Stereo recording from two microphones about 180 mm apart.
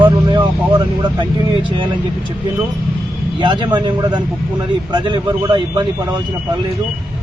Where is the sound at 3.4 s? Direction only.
25° right (ahead or behind).